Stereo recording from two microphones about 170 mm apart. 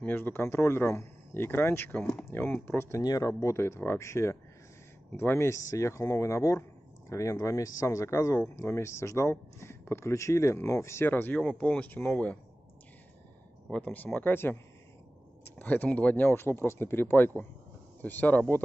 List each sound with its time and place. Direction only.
0.0 s speech: 10° left (ahead or behind)
13.7 s speech: 10° left (ahead or behind)
15.6 s speech: 10° left (ahead or behind)